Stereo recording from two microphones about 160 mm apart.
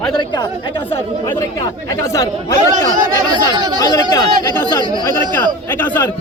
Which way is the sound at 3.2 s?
25° right (ahead or behind).